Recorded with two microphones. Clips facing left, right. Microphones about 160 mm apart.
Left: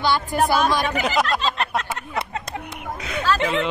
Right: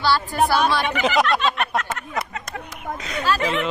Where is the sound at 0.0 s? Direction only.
20° left (ahead or behind).